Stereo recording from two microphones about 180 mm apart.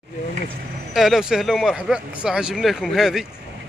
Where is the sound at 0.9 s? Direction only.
Centre (ahead or behind).